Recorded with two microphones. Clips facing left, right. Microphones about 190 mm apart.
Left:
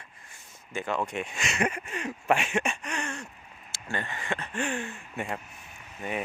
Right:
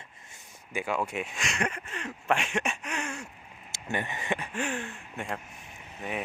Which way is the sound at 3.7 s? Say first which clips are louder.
Right 2 dB; 20° right (ahead or behind).